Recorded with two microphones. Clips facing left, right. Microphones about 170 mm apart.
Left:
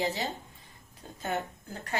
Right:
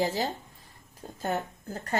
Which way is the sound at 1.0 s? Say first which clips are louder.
Right 4 dB; 40° right (ahead or behind).